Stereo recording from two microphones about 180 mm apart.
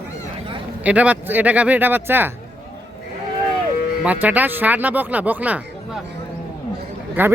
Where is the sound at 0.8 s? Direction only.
5° right (ahead or behind).